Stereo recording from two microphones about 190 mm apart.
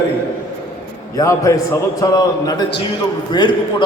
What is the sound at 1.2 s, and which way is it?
A man's voice, 15° left (ahead or behind).